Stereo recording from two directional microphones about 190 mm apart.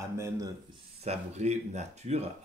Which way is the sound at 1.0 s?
35° right (ahead or behind).